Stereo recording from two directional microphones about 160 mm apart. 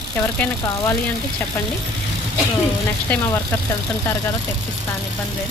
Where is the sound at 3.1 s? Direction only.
10° left (ahead or behind).